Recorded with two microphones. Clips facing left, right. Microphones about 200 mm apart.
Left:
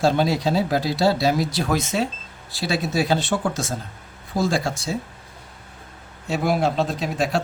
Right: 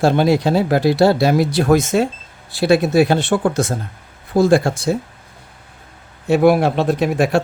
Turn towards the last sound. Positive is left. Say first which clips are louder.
# right 7 dB
turn(degrees=-60)  # may be behind; listen again after turning